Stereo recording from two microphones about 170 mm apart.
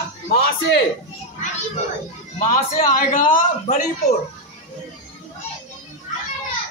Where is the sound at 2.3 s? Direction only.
45° left (ahead or behind).